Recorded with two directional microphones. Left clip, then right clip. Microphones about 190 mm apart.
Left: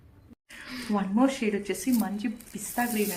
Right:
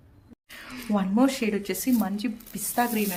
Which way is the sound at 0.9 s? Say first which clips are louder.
Right 2 dB; 40° right (ahead or behind).